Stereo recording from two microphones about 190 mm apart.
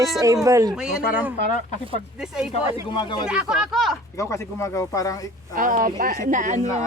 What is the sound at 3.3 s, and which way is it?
Speech, 5° right (ahead or behind).